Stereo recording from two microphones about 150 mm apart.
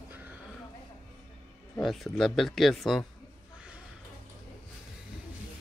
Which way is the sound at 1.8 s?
Centre (ahead or behind).